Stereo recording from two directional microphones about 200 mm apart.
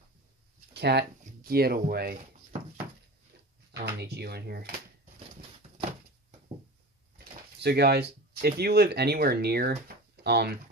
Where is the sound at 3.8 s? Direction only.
55° right (ahead or behind).